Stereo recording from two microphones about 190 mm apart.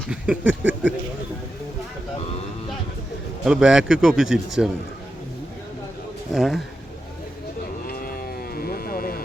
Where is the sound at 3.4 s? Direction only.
5° right (ahead or behind).